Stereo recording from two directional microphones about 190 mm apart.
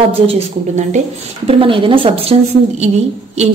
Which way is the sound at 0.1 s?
35° right (ahead or behind).